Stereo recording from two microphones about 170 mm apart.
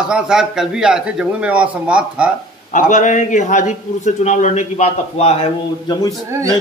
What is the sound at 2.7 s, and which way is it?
A man's voice, 50° left (ahead or behind).